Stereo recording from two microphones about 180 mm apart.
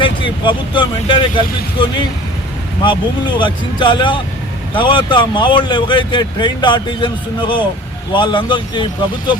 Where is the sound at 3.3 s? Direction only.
25° left (ahead or behind).